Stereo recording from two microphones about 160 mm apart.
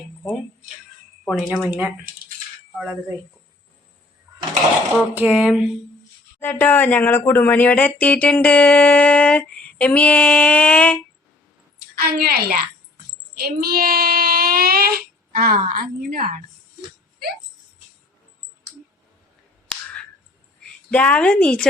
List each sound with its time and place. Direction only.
1.2 s speech: centre (ahead or behind)
1.5 s speech: 10° right (ahead or behind)
5.1 s speech: 5° right (ahead or behind)
6.4 s speech: 10° left (ahead or behind)
11.9 s a woman's voice: 70° right (ahead or behind)
13.3 s child singing: 70° right (ahead or behind)
20.9 s speech: 10° left (ahead or behind)